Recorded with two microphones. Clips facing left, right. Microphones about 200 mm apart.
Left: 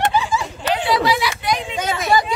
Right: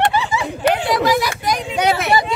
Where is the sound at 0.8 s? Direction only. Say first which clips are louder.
Right 2 dB; 45° right (ahead or behind).